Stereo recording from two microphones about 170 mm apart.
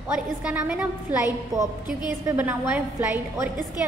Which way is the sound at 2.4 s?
10° right (ahead or behind).